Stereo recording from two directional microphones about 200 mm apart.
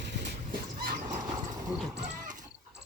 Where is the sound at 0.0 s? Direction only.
60° right (ahead or behind).